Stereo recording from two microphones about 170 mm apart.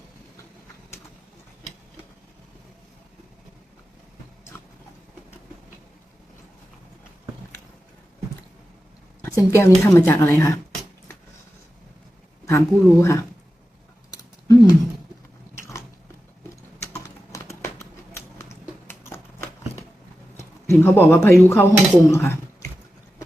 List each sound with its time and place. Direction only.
9.2 s a woman's voice: 15° left (ahead or behind)
12.5 s a woman's voice: 15° left (ahead or behind)
14.1 s a sound: 20° left (ahead or behind)
15.5 s biting: 15° left (ahead or behind)
17.6 s a sound: 15° left (ahead or behind)
18.9 s typewriter: 15° left (ahead or behind)
20.3 s a woman's voice: 15° left (ahead or behind)